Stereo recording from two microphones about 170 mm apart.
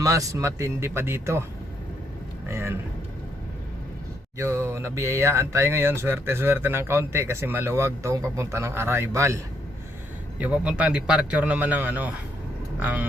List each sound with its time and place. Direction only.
0.0 s speech: 20° right (ahead or behind)
2.5 s speech: 15° right (ahead or behind)
4.4 s speech: 15° right (ahead or behind)
10.4 s speech: 5° right (ahead or behind)